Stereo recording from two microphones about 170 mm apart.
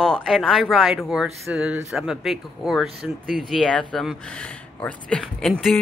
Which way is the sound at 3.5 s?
5° left (ahead or behind).